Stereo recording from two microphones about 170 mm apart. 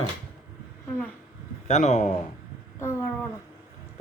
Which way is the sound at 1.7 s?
45° left (ahead or behind).